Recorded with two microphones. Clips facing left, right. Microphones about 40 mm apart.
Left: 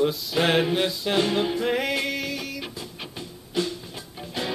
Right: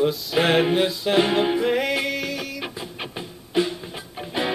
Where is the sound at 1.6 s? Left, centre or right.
Centre.